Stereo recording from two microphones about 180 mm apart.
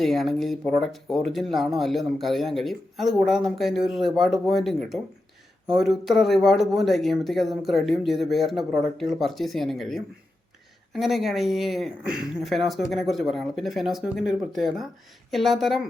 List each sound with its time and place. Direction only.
0.0 s speech: centre (ahead or behind)